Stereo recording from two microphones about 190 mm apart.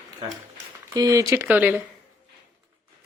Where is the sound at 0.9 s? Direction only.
20° right (ahead or behind).